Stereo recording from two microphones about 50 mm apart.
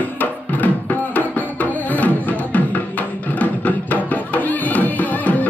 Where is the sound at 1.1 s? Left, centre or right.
Left.